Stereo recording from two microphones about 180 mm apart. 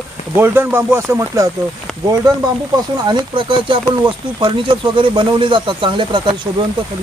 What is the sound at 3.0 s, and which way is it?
Speech, 25° right (ahead or behind).